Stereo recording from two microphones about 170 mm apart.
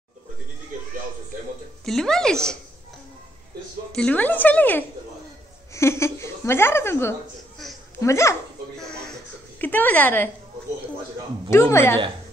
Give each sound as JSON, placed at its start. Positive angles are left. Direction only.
{"t": 1.9, "sound": "a woman's voice", "side_deg": 5}
{"t": 3.9, "sound": "a woman's voice", "side_deg": 10}
{"t": 9.6, "sound": "a woman's voice", "side_deg": 10}
{"t": 11.5, "sound": "a woman's voice", "side_deg": 15}